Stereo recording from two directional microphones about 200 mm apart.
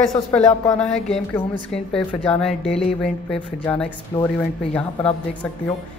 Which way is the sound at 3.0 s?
5° left (ahead or behind).